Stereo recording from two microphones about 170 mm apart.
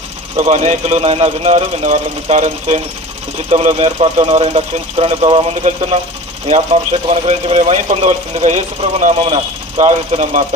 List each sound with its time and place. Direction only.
0.3 s speech: 40° right (ahead or behind)